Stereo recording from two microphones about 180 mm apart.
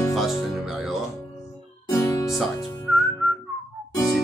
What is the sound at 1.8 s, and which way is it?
Music, 15° left (ahead or behind).